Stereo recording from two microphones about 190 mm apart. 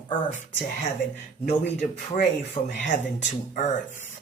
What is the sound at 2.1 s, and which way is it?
Speech, 40° left (ahead or behind).